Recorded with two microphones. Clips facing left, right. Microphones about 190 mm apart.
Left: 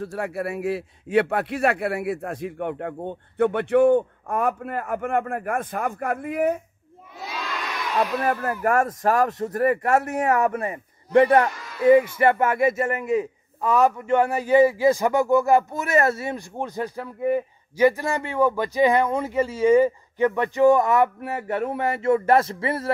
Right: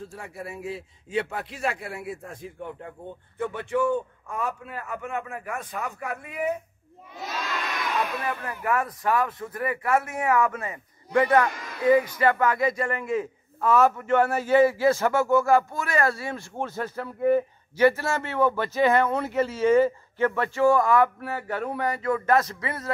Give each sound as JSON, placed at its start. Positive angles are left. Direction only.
{"t": 0.0, "sound": "a man's voice", "side_deg": 70}
{"t": 8.2, "sound": "a man's voice", "side_deg": 45}
{"t": 13.0, "sound": "a man's voice", "side_deg": 0}
{"t": 13.7, "sound": "speech", "side_deg": 15}